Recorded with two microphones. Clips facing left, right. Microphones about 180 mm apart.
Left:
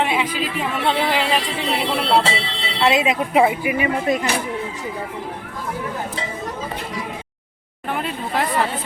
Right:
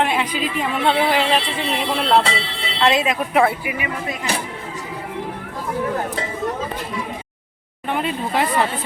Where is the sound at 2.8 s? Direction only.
20° left (ahead or behind).